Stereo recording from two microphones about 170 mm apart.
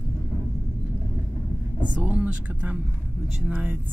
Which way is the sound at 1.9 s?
10° right (ahead or behind).